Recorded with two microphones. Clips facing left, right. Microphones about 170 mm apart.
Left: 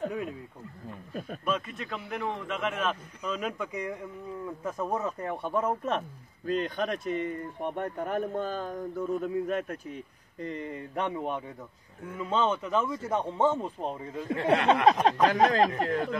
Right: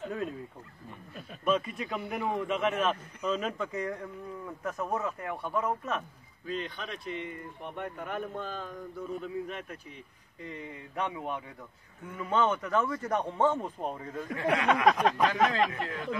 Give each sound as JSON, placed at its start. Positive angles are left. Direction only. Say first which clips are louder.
{"t": 0.1, "sound": "speech", "louder": "even", "side_deg": 5}
{"t": 1.4, "sound": "a man's voice", "louder": "right 4 dB", "side_deg": 0}
{"t": 3.2, "sound": "a man's voice", "louder": "right 1 dB", "side_deg": 10}
{"t": 5.0, "sound": "speech", "louder": "left 3 dB", "side_deg": 30}
{"t": 6.4, "sound": "speech", "louder": "left 7 dB", "side_deg": 45}
{"t": 12.1, "sound": "speech", "louder": "even", "side_deg": 25}